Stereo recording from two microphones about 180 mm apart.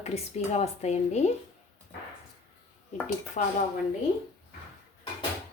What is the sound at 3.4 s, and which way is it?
Speech, 40° left (ahead or behind).